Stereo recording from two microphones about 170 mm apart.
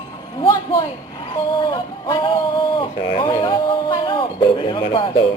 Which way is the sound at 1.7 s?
30° left (ahead or behind).